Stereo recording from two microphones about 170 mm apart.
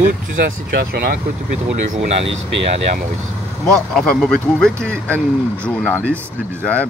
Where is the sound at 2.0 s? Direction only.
40° right (ahead or behind).